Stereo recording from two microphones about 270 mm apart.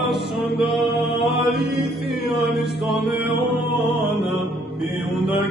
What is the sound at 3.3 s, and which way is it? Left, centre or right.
Music, left.